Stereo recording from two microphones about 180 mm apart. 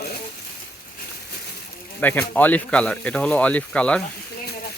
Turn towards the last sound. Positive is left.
turn(degrees=5)  # may be behind; listen again after turning